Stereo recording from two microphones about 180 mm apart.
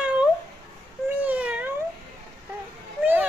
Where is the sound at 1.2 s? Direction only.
10° right (ahead or behind).